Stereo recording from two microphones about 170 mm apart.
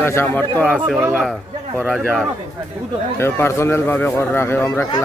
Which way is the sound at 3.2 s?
15° left (ahead or behind).